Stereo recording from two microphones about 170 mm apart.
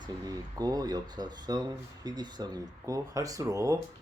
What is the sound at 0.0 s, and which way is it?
Speech, 20° right (ahead or behind).